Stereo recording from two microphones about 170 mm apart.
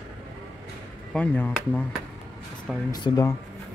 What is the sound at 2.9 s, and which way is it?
Speech, 20° left (ahead or behind).